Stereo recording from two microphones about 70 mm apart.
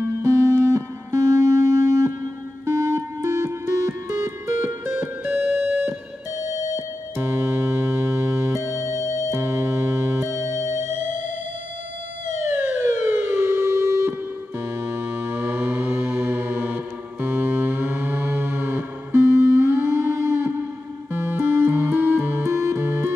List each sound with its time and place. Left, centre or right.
0.0 s music: right
7.2 s music: right
12.7 s siren: right
14.6 s music: right